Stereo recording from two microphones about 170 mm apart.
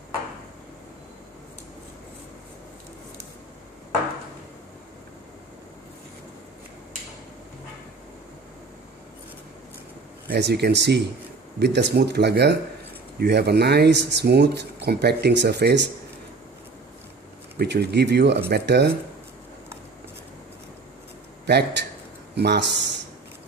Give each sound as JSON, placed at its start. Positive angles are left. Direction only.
{"t": 10.2, "sound": "speech", "side_deg": -75}
{"t": 17.6, "sound": "speech", "side_deg": -75}
{"t": 21.4, "sound": "speech", "side_deg": -85}